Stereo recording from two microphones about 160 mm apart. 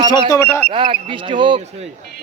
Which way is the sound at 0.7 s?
30° right (ahead or behind).